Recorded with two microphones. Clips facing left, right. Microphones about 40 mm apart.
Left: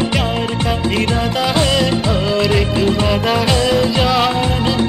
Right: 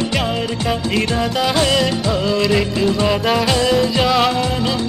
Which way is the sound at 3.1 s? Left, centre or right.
Centre.